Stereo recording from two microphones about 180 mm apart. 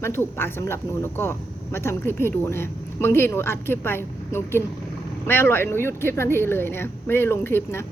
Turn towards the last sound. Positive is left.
turn(degrees=15)  # may be behind; listen again after turning